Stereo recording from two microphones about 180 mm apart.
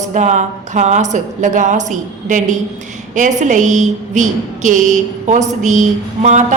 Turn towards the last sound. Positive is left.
turn(degrees=-40)  # may be behind; listen again after turning